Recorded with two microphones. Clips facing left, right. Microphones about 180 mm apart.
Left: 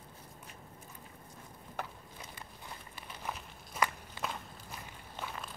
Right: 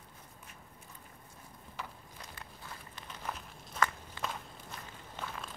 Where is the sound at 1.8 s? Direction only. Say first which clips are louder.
Left 3 dB; 50° left (ahead or behind).